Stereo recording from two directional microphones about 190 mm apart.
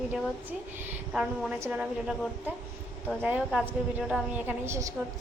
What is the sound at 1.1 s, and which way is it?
A woman's voice, 5° right (ahead or behind).